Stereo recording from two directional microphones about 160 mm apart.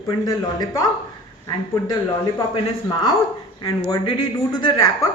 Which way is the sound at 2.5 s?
30° left (ahead or behind).